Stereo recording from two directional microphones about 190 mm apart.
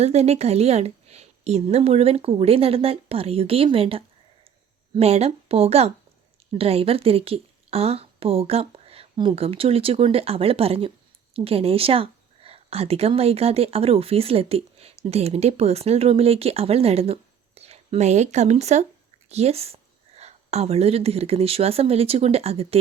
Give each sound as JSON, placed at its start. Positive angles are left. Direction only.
{"t": 0.0, "sound": "a woman's voice", "side_deg": -35}